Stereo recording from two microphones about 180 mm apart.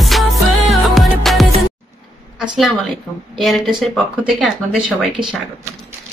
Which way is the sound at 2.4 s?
5° right (ahead or behind).